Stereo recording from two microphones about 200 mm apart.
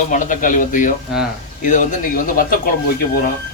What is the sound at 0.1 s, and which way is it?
Speech, 40° left (ahead or behind).